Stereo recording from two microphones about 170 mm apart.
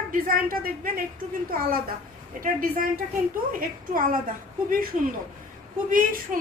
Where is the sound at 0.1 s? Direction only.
55° right (ahead or behind).